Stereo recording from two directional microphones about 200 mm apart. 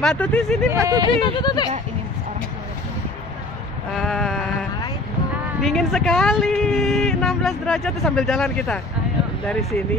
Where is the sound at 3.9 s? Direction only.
Centre (ahead or behind).